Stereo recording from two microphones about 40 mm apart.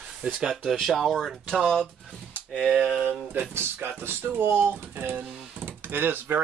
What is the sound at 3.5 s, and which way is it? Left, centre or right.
Speech, right.